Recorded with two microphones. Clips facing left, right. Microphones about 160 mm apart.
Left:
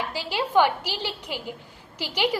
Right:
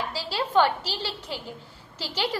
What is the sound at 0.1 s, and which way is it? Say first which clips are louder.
A woman's voice: left 2 dB; 15° left (ahead or behind).